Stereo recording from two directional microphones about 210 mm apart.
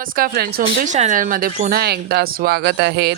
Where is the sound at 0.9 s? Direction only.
35° right (ahead or behind).